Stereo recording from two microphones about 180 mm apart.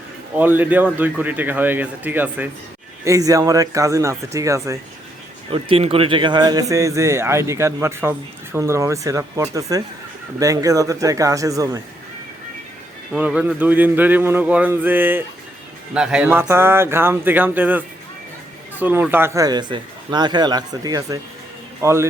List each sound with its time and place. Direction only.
0.3 s speech: 10° right (ahead or behind)
5.5 s speech: 30° right (ahead or behind)
13.1 s a man's voice: 10° right (ahead or behind)